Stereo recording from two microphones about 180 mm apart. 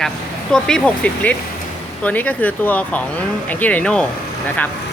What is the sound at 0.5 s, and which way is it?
Speech, 5° left (ahead or behind).